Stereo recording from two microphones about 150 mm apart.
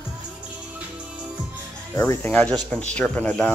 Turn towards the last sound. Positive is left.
turn(degrees=10)  # may be behind; listen again after turning